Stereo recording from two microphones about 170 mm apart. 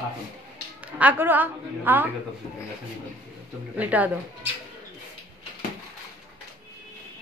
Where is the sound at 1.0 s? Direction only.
10° right (ahead or behind).